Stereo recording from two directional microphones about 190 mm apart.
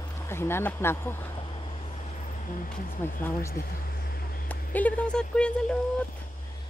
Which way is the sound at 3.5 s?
50° left (ahead or behind).